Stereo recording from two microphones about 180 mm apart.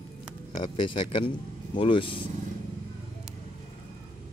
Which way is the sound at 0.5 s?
30° left (ahead or behind).